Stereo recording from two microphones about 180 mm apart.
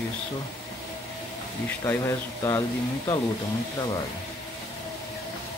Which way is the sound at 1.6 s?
15° left (ahead or behind).